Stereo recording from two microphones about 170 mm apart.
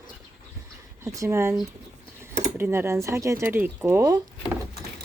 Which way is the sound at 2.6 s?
15° right (ahead or behind).